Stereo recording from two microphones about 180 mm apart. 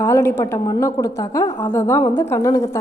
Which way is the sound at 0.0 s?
15° left (ahead or behind).